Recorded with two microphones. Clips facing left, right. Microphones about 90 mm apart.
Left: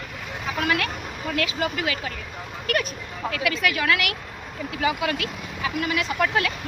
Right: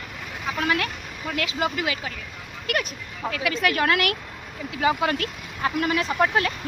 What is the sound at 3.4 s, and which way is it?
A woman's voice, 30° right (ahead or behind).